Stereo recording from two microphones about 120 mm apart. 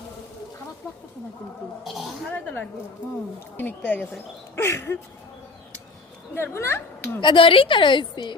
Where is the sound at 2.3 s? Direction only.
15° left (ahead or behind).